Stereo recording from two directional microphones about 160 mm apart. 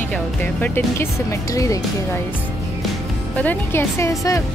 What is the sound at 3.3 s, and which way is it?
Speech, 10° left (ahead or behind).